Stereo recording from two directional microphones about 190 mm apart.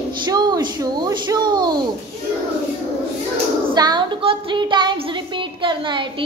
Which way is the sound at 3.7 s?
20° right (ahead or behind).